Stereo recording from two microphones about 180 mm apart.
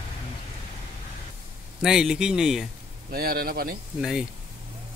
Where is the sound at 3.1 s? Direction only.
55° right (ahead or behind).